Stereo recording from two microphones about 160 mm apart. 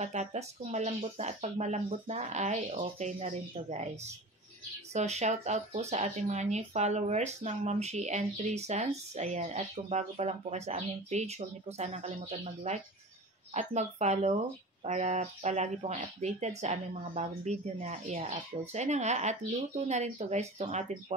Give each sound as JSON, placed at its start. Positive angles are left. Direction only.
{"t": 0.0, "sound": "speech", "side_deg": -45}
{"t": 4.9, "sound": "speech", "side_deg": -45}